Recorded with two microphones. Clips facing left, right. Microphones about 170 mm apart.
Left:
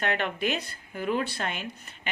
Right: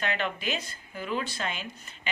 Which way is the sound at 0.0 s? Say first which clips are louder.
Left 3 dB; 55° left (ahead or behind).